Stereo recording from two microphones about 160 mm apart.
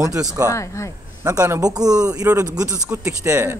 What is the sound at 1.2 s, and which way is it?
A man's voice, 20° right (ahead or behind).